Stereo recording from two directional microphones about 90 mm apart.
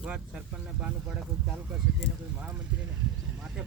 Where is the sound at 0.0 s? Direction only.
10° right (ahead or behind).